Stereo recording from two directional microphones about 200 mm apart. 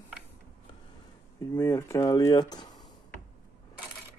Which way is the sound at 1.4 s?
15° left (ahead or behind).